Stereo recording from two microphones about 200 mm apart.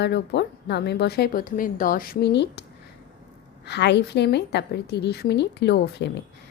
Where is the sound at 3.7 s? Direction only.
60° left (ahead or behind).